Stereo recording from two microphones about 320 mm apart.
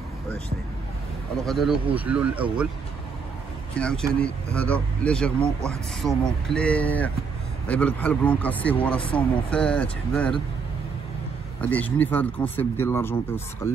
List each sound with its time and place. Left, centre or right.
1.4 s speech: centre
3.7 s speech: centre
9.0 s speech: centre
9.5 s speech: centre
11.6 s speech: centre